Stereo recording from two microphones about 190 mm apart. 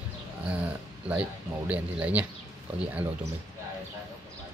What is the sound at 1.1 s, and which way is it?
Speech, 5° right (ahead or behind).